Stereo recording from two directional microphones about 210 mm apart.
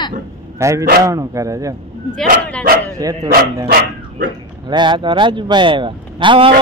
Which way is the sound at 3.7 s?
50° right (ahead or behind).